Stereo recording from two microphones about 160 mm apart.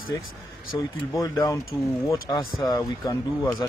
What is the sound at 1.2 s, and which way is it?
Speech, 20° left (ahead or behind).